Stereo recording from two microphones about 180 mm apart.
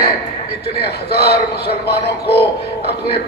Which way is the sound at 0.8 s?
60° left (ahead or behind).